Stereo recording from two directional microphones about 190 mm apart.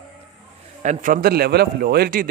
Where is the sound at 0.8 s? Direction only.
45° right (ahead or behind).